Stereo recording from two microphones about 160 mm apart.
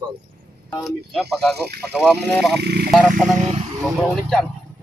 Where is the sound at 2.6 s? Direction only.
90° right.